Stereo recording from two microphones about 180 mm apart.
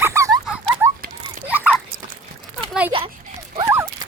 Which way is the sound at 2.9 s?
30° right (ahead or behind).